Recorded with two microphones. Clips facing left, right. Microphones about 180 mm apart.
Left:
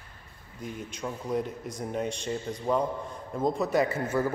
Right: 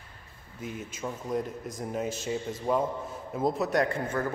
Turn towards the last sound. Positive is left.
turn(degrees=10)  # may be behind; listen again after turning